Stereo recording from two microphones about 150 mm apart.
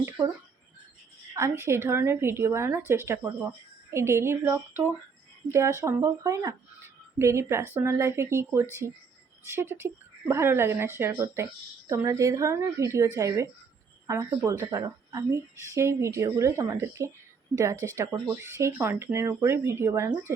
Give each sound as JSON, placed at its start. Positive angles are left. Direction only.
{"t": 1.4, "sound": "speech", "side_deg": -20}
{"t": 8.8, "sound": "speech", "side_deg": -90}
{"t": 9.4, "sound": "speech", "side_deg": -15}